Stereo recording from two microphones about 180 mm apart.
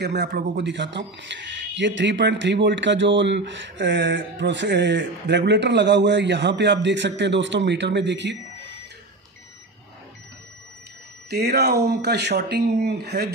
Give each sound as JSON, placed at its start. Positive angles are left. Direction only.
{"t": 0.0, "sound": "speech", "side_deg": -65}
{"t": 11.2, "sound": "speech", "side_deg": -65}